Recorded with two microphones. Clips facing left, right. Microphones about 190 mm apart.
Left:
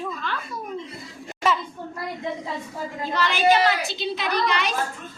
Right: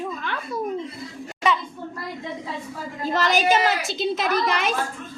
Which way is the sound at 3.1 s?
40° right (ahead or behind).